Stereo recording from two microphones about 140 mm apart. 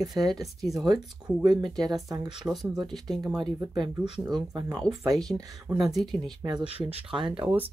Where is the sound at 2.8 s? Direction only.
Centre (ahead or behind).